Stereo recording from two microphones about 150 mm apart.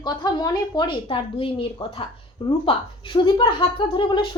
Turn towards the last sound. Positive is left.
turn(degrees=30)  # may be behind; listen again after turning